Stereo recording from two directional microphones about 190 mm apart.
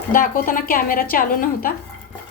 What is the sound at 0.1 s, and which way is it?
A woman's voice, 50° left (ahead or behind).